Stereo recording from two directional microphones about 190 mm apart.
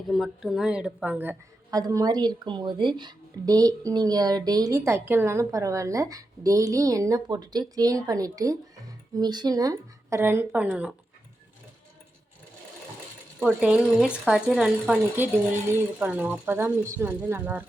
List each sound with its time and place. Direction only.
0.1 s a woman's voice: centre (ahead or behind)
13.4 s a woman's voice: 5° right (ahead or behind)